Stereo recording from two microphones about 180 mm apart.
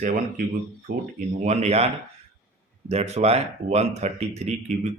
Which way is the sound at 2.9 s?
35° right (ahead or behind).